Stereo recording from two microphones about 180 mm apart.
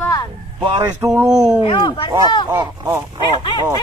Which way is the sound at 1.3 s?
5° right (ahead or behind).